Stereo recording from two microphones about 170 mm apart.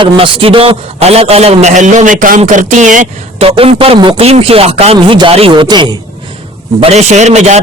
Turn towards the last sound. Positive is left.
turn(degrees=-40)  # may be behind; listen again after turning